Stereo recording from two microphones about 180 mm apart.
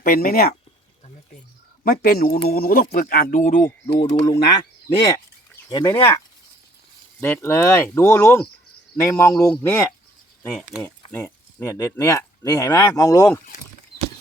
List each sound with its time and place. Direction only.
0.0 s speech: 55° left (ahead or behind)
1.8 s speech: 55° left (ahead or behind)
3.6 s speech: 15° left (ahead or behind)
4.1 s speech: 25° left (ahead or behind)
10.5 s speech: centre (ahead or behind)
11.1 s speech: 15° left (ahead or behind)